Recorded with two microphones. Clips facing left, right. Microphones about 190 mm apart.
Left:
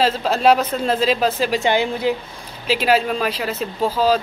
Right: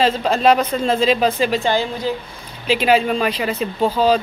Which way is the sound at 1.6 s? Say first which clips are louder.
Left 1 dB; 20° left (ahead or behind).